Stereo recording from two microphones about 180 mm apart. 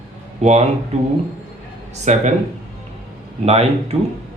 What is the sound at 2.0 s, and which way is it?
Speech, 40° right (ahead or behind).